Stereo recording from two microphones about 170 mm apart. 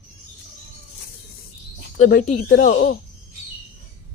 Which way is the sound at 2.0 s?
50° left (ahead or behind).